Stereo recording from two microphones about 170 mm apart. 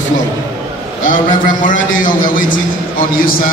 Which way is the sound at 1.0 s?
50° left (ahead or behind).